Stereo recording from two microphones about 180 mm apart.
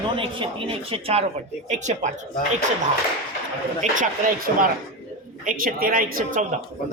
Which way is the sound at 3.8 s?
45° right (ahead or behind).